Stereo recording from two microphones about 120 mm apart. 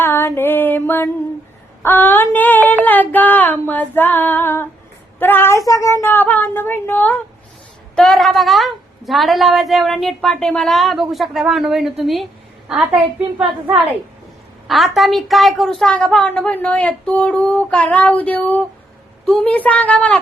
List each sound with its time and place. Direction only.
0.0 s a sound: 20° left (ahead or behind)
1.8 s female singing: 15° left (ahead or behind)
2.8 s a woman's voice: 15° left (ahead or behind)